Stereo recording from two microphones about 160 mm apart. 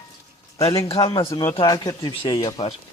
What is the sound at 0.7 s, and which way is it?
Speech, 35° left (ahead or behind).